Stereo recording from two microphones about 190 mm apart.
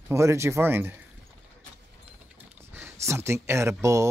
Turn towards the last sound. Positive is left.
turn(degrees=-15)  # may be behind; listen again after turning